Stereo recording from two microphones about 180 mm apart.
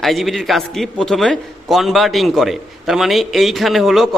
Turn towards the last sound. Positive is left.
turn(degrees=0)  # may be behind; listen again after turning